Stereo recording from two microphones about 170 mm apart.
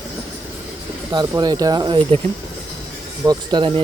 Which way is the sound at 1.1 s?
25° right (ahead or behind).